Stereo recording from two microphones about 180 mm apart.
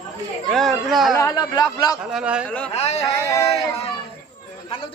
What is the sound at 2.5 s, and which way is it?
Speech, 5° left (ahead or behind).